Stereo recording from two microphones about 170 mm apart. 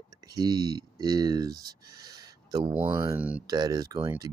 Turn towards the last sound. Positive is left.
turn(degrees=-20)  # may be behind; listen again after turning